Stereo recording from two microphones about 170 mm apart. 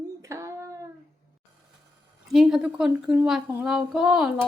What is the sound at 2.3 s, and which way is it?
Speech, 5° right (ahead or behind).